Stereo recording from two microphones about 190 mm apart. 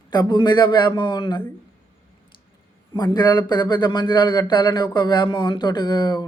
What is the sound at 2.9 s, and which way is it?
Speech, 20° left (ahead or behind).